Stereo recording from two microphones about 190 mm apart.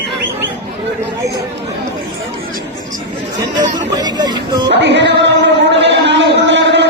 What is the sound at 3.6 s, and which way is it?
Music, 20° right (ahead or behind).